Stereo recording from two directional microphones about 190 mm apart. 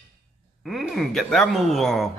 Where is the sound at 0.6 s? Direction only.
Centre (ahead or behind).